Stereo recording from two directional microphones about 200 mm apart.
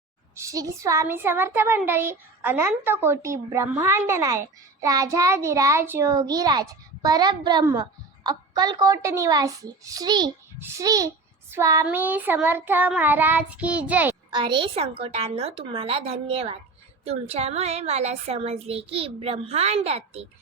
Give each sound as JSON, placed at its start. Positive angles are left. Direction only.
{"t": 0.3, "sound": "a child's voice", "side_deg": -15}
{"t": 14.3, "sound": "a woman's voice", "side_deg": -25}